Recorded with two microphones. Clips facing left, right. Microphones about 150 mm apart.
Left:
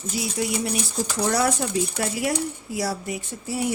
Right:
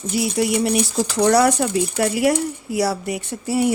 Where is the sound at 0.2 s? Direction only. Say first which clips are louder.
Right 7 dB; 70° right (ahead or behind).